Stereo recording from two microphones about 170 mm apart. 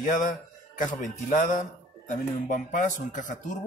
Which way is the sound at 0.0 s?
50° left (ahead or behind).